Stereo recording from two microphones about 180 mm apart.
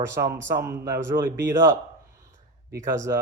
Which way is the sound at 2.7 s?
20° right (ahead or behind).